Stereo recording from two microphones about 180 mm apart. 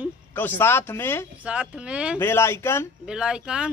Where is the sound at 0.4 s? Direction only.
10° left (ahead or behind).